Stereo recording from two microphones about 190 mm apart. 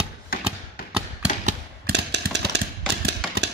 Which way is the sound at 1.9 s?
65° right (ahead or behind).